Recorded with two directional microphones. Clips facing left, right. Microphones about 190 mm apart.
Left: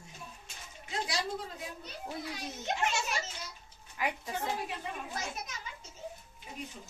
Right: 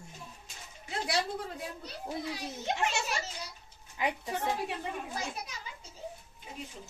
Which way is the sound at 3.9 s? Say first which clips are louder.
Right 2 dB; 20° right (ahead or behind).